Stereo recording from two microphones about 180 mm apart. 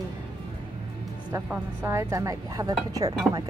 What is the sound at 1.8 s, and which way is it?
Speech, 15° right (ahead or behind).